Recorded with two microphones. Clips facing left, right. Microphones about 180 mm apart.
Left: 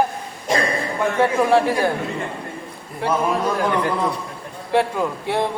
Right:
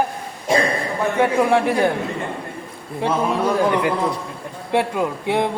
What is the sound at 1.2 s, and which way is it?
Speech, 20° right (ahead or behind).